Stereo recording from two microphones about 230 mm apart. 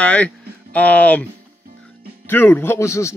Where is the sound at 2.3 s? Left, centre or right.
Centre.